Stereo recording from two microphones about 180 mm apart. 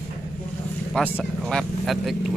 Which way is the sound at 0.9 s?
Centre (ahead or behind).